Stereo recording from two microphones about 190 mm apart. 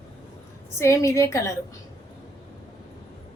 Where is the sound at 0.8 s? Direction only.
15° left (ahead or behind).